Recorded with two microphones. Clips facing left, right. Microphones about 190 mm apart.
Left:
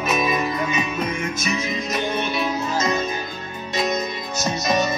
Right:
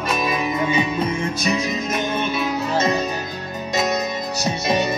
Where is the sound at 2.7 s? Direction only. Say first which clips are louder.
Right 4 dB; 30° right (ahead or behind).